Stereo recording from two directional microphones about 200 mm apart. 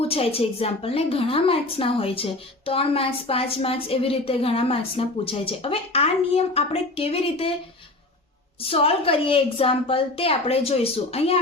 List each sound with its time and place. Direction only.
0.1 s a woman's voice: 30° left (ahead or behind)
8.6 s a woman's voice: 30° left (ahead or behind)